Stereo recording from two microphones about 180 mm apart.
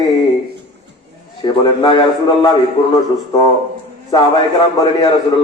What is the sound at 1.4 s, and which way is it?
Speech, 25° left (ahead or behind).